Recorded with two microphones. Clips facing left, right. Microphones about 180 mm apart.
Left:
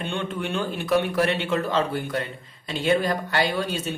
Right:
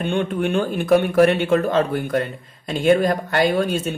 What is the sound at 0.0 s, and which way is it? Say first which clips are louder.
Speech: right 7 dB; 50° right (ahead or behind).